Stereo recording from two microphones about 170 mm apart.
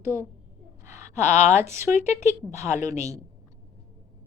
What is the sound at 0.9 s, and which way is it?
Speech, 45° left (ahead or behind).